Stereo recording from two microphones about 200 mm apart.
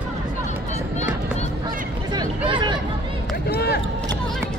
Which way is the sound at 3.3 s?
55° left (ahead or behind).